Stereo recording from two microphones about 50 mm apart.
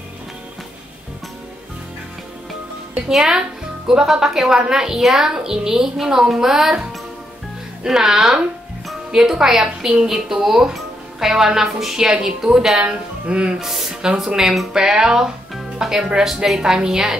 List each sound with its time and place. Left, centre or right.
3.1 s speech: centre
12.9 s speech: centre
13.6 s speech: centre